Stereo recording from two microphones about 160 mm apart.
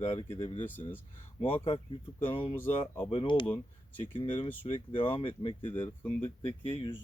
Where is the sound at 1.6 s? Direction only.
30° left (ahead or behind).